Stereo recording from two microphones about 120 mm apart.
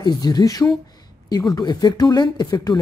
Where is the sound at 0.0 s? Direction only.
35° left (ahead or behind).